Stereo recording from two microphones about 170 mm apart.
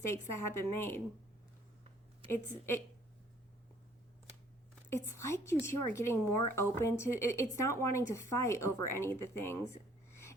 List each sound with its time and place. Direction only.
0.1 s speech: 15° left (ahead or behind)
2.2 s a woman's voice: 30° right (ahead or behind)
4.9 s speech: 15° left (ahead or behind)